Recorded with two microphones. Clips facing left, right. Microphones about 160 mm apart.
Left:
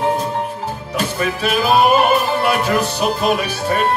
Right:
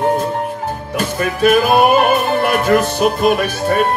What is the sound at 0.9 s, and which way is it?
Music, 50° right (ahead or behind).